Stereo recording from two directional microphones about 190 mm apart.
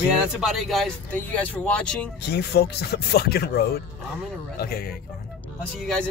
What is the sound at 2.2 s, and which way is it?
Speech, 60° left (ahead or behind).